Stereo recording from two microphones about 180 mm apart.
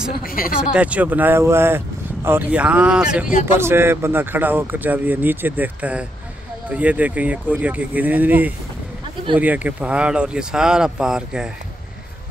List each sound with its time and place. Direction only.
0.2 s speech: 55° left (ahead or behind)
0.6 s speech: 5° right (ahead or behind)